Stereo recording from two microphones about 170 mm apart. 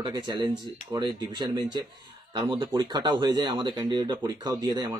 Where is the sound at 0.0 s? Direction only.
25° right (ahead or behind).